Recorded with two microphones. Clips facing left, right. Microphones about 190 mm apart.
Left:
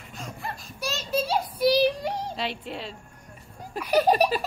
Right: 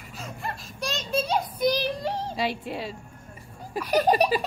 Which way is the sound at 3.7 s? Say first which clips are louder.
Left 1 dB; 10° left (ahead or behind).